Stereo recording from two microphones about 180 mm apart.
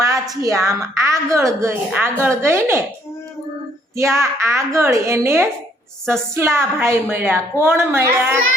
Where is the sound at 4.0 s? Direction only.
15° right (ahead or behind).